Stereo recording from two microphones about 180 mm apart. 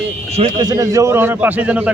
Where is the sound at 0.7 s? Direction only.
20° right (ahead or behind).